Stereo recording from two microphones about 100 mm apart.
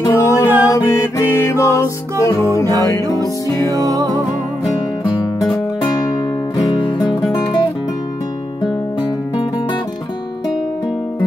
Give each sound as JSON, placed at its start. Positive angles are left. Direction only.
{"t": 0.1, "sound": "music", "side_deg": 30}
{"t": 3.7, "sound": "music", "side_deg": -35}
{"t": 6.5, "sound": "music", "side_deg": 45}